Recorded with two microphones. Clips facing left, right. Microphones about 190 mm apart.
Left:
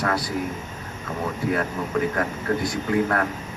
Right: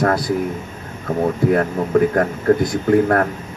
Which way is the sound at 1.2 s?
50° right (ahead or behind).